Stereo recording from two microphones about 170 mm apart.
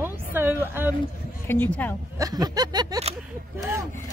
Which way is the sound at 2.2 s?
25° right (ahead or behind).